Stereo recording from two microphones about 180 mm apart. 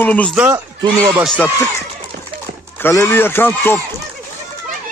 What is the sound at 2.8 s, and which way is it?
Speech, 15° left (ahead or behind).